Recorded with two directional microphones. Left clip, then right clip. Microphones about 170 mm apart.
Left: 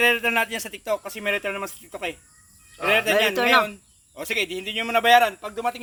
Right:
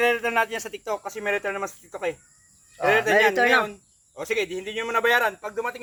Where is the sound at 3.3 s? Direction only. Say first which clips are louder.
Left 1 dB; 10° left (ahead or behind).